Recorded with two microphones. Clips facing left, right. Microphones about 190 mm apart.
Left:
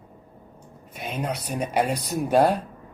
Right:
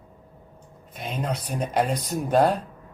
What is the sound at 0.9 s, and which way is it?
Speech, 10° left (ahead or behind).